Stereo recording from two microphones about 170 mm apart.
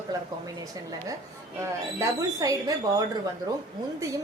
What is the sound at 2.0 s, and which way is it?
Speech, 20° right (ahead or behind).